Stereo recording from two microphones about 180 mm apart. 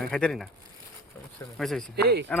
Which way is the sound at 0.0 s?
5° left (ahead or behind).